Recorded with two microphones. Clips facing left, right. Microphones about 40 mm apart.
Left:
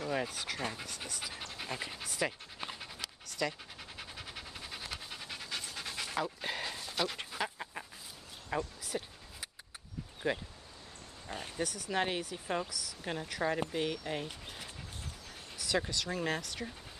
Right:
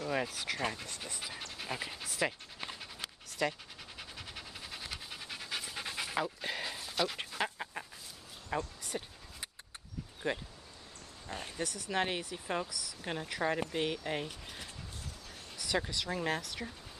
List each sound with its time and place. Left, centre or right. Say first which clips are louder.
0.1 s speech: right 2 dB; centre
3.3 s dog: right 2 dB; centre
4.0 s pant: even; centre
6.2 s a sound: even; centre
7.3 s dog: right 3 dB; centre
8.5 s a sound: even; centre
10.2 s speech: left 1 dB; centre
11.2 s speech: left 1 dB; centre
15.5 s speech: left 1 dB; centre